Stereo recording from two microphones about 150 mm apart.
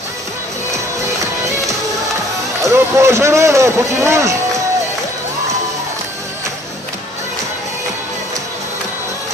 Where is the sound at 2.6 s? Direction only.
20° right (ahead or behind).